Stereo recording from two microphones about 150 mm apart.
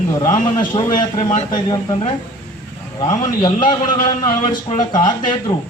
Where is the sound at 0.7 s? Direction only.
35° left (ahead or behind).